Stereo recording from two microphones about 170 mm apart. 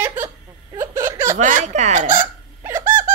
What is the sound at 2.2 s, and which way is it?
Hiccup, 15° right (ahead or behind).